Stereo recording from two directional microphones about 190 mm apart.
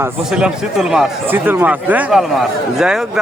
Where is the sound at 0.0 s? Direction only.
5° right (ahead or behind).